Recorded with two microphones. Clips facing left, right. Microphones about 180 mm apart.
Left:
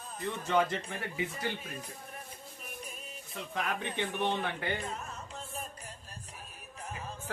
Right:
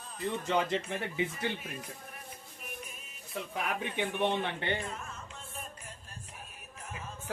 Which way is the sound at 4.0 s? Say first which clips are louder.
Right 3 dB; 15° right (ahead or behind).